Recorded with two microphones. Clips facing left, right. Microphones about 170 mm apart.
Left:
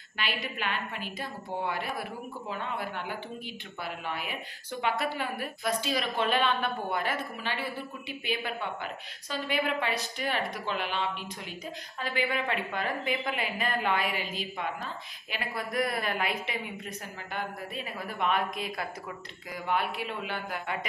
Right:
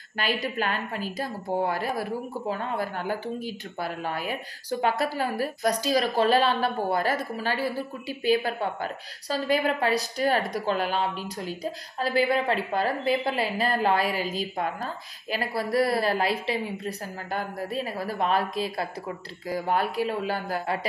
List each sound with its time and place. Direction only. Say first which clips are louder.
0.2 s a woman's voice: right 6 dB; 40° right (ahead or behind)